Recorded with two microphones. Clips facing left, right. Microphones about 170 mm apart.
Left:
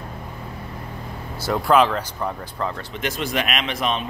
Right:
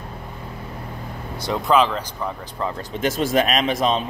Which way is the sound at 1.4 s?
5° left (ahead or behind).